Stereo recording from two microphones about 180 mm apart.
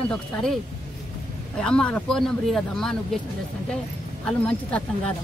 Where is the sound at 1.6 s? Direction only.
5° left (ahead or behind).